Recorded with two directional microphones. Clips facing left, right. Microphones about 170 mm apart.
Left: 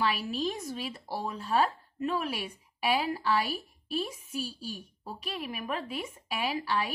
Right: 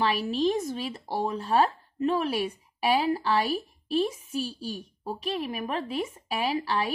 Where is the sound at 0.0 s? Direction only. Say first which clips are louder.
Right 5 dB; 30° right (ahead or behind).